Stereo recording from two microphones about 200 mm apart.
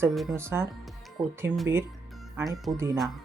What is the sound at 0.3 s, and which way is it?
Speech, 15° right (ahead or behind).